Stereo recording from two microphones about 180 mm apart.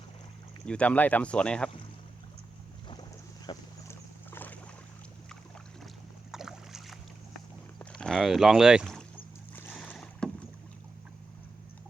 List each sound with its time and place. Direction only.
0.6 s speech: 5° left (ahead or behind)
2.9 s boat: 25° left (ahead or behind)
6.3 s boat: centre (ahead or behind)
7.9 s speech: 5° left (ahead or behind)
9.6 s boat: 10° left (ahead or behind)